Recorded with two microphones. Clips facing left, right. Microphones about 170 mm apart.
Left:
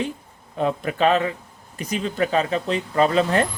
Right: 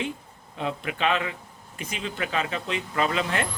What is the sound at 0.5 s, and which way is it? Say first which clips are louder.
Speech: left 7 dB; 45° left (ahead or behind).